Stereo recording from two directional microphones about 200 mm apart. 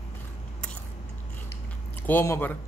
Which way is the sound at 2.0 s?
10° left (ahead or behind).